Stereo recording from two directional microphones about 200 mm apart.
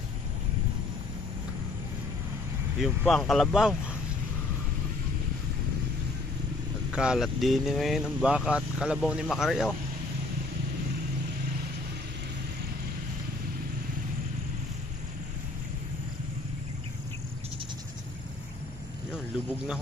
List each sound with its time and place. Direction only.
2.8 s speech: centre (ahead or behind)
6.9 s speech: 5° right (ahead or behind)